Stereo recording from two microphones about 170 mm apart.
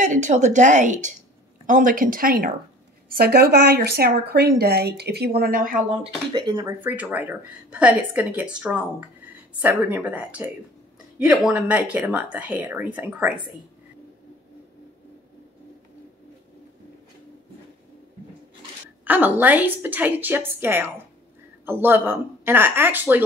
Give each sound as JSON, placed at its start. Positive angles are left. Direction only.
{"t": 0.0, "sound": "a woman's voice", "side_deg": -45}
{"t": 6.0, "sound": "speech", "side_deg": -25}
{"t": 6.8, "sound": "speech", "side_deg": -10}
{"t": 19.0, "sound": "speech", "side_deg": -10}